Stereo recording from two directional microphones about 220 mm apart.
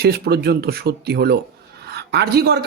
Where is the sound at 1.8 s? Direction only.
50° right (ahead or behind).